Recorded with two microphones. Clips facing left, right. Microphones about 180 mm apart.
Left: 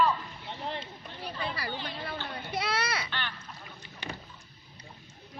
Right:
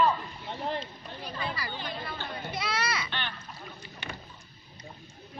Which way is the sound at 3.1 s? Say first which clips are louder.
Right 1 dB; 20° right (ahead or behind).